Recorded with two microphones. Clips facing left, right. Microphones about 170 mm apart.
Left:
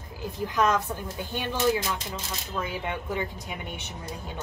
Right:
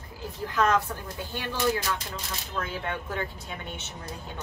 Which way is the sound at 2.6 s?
15° left (ahead or behind).